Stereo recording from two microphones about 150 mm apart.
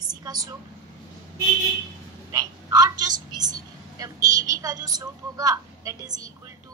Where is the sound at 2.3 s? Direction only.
25° right (ahead or behind).